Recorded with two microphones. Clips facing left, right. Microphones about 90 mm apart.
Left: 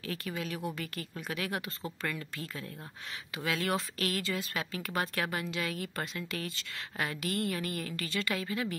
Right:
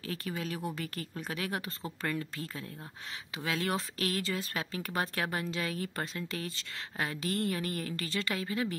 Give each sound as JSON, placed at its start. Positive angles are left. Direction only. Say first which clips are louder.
{"t": 0.0, "sound": "a woman's voice", "louder": "even", "side_deg": -35}